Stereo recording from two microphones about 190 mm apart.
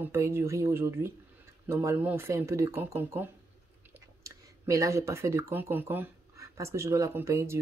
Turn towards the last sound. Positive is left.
turn(degrees=-15)  # may be behind; listen again after turning